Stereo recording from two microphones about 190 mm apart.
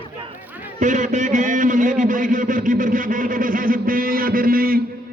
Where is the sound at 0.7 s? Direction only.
40° right (ahead or behind).